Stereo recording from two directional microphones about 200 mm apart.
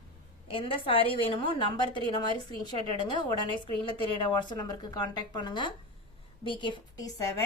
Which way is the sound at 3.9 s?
25° left (ahead or behind).